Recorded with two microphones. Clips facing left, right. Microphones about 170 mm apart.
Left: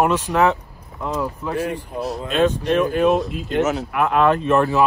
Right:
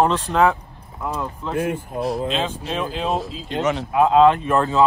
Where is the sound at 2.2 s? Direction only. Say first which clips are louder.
Left 6 dB; 55° left (ahead or behind).